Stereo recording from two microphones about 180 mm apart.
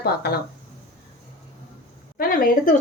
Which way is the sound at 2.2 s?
55° left (ahead or behind).